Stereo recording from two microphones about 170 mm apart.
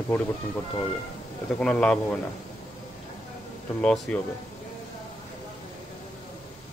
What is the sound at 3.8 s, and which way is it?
Speech, 5° left (ahead or behind).